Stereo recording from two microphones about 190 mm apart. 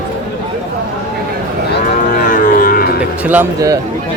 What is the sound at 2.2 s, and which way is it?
Music, 50° left (ahead or behind).